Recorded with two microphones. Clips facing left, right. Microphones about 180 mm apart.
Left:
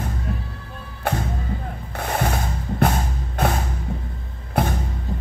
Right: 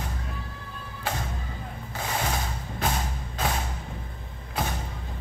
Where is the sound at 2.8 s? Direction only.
60° left (ahead or behind).